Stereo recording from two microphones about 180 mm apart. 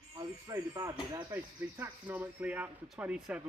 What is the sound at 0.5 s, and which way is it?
Speech, 20° right (ahead or behind).